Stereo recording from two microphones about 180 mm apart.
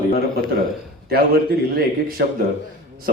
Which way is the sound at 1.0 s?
60° right (ahead or behind).